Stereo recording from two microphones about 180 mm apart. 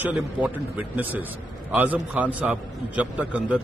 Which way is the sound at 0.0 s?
10° right (ahead or behind).